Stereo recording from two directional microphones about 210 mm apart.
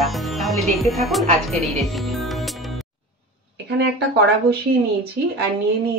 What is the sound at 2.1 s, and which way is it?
Music, centre (ahead or behind).